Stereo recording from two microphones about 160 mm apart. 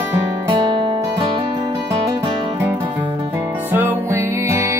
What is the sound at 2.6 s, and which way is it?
Music, 10° right (ahead or behind).